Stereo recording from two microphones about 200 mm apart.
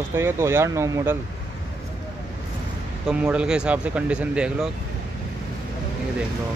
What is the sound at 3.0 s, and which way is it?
Speech, 5° right (ahead or behind).